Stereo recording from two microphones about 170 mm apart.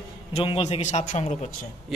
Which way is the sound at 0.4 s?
30° left (ahead or behind).